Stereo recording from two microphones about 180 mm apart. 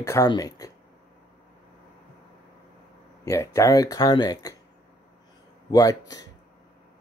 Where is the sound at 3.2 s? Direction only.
15° left (ahead or behind).